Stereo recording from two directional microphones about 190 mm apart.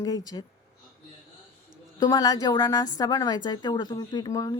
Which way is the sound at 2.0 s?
20° left (ahead or behind).